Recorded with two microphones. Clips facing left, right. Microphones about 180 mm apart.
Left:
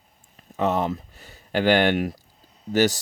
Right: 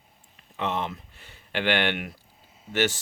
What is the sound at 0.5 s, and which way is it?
Speech, 40° left (ahead or behind).